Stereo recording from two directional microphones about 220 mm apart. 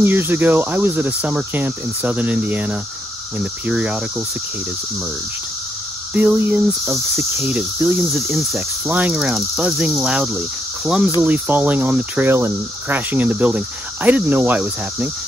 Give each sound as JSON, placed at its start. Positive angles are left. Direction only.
{"t": 0.0, "sound": "speech", "side_deg": -10}
{"t": 3.3, "sound": "cricket", "side_deg": -5}
{"t": 6.1, "sound": "speech", "side_deg": -5}
{"t": 8.5, "sound": "cricket", "side_deg": -5}
{"t": 11.1, "sound": "speech", "side_deg": -10}